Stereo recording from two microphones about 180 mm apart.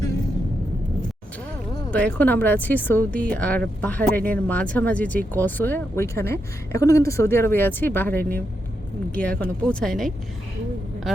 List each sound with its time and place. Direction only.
1.9 s speech: 5° left (ahead or behind)